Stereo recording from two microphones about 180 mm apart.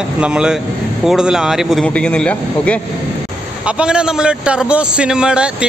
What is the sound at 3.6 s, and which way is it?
A man's voice, 5° right (ahead or behind).